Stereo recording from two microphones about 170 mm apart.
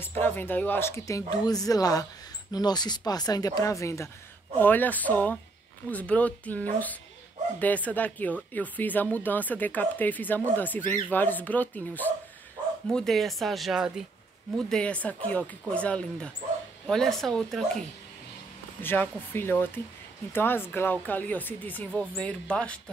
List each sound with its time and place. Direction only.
0.0 s speech: 15° left (ahead or behind)
18.8 s speech: 10° left (ahead or behind)